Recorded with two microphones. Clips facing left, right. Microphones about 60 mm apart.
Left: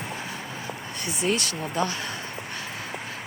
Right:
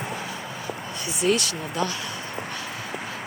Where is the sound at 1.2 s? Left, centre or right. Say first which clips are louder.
Right 3 dB; left.